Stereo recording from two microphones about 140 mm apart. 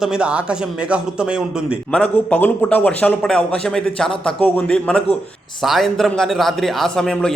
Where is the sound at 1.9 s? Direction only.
10° left (ahead or behind).